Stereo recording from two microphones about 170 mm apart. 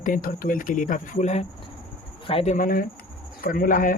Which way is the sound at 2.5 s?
55° left (ahead or behind).